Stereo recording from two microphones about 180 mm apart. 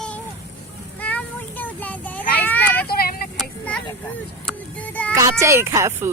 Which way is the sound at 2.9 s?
55° left (ahead or behind).